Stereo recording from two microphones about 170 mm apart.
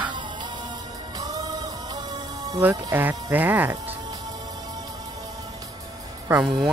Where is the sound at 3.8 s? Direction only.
25° right (ahead or behind).